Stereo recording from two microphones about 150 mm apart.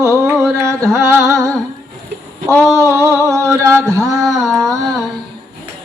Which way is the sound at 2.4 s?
5° left (ahead or behind).